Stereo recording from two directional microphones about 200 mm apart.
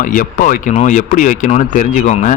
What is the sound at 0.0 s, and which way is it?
Speech, 45° left (ahead or behind).